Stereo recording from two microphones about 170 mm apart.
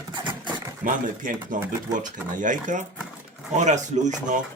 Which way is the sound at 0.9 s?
50° right (ahead or behind).